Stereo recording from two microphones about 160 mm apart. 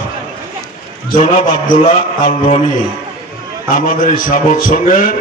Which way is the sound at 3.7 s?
55° left (ahead or behind).